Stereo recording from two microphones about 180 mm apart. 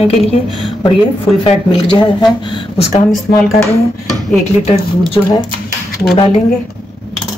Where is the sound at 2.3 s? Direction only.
25° left (ahead or behind).